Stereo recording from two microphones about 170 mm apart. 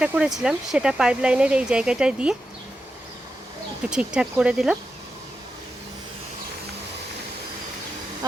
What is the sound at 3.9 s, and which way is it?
Speech, 5° right (ahead or behind).